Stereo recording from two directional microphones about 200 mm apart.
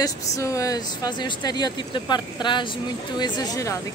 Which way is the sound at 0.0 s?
15° left (ahead or behind).